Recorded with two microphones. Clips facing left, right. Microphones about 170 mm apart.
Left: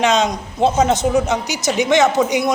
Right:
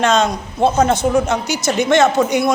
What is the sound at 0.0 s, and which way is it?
Speech, 15° left (ahead or behind).